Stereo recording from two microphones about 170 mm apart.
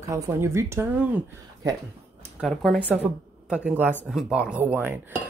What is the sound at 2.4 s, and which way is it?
A woman's voice, centre (ahead or behind).